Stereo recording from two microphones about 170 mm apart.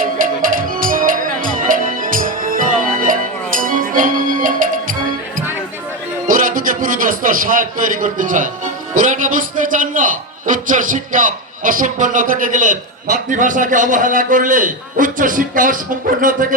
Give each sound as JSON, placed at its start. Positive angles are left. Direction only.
{"t": 0.0, "sound": "music", "side_deg": -55}
{"t": 6.2, "sound": "a man's voice", "side_deg": -55}